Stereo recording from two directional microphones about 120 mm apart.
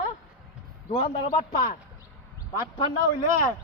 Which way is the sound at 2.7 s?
40° left (ahead or behind).